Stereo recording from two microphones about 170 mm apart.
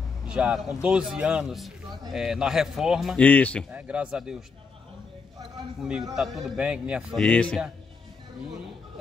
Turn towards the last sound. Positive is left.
turn(degrees=5)  # may be behind; listen again after turning